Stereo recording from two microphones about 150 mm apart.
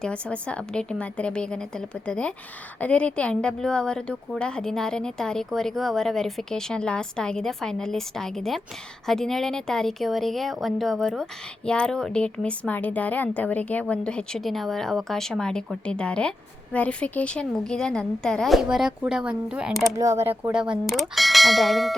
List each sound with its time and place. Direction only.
0.0 s a woman's voice: 5° left (ahead or behind)
20.0 s speech: 20° right (ahead or behind)
20.5 s speech: 5° right (ahead or behind)